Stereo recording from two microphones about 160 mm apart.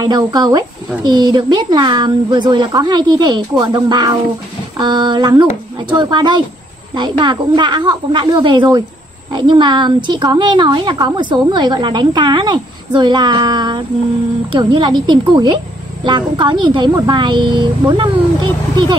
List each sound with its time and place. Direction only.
0.0 s a woman's voice: 25° right (ahead or behind)